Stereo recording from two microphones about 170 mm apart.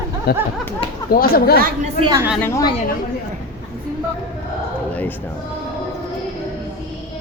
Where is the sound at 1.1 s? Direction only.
60° left (ahead or behind).